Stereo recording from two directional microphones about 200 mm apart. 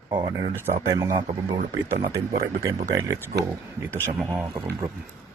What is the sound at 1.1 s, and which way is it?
Speech, 20° right (ahead or behind).